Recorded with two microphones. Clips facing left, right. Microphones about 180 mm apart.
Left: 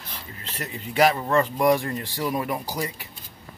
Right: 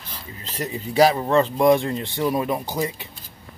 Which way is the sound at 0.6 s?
35° right (ahead or behind).